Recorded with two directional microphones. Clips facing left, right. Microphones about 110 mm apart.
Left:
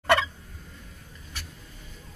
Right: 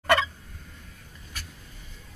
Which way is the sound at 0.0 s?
Centre (ahead or behind).